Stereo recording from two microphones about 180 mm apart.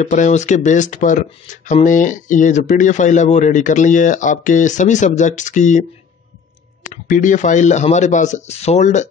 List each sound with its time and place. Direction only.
0.0 s speech: 40° left (ahead or behind)